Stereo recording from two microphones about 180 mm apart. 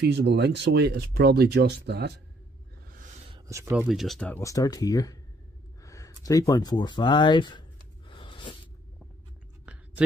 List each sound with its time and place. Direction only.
0.0 s speech: 70° right (ahead or behind)
3.4 s speech: 15° right (ahead or behind)
3.9 s speech: centre (ahead or behind)
4.4 s speech: 20° left (ahead or behind)
8.1 s a sound: 25° left (ahead or behind)
9.7 s a sound: 5° right (ahead or behind)